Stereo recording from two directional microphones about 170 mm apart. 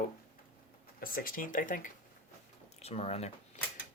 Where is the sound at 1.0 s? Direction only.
55° left (ahead or behind).